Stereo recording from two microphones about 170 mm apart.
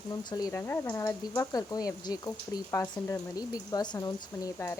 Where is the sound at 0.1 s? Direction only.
20° left (ahead or behind).